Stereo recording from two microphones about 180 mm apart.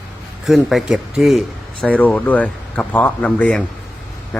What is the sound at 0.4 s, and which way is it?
Speech, centre (ahead or behind).